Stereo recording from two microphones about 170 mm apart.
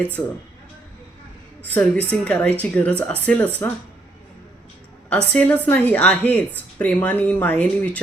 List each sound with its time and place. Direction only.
0.2 s a woman's voice: 15° left (ahead or behind)
1.7 s a woman's voice: 10° left (ahead or behind)
5.0 s a woman's voice: 5° left (ahead or behind)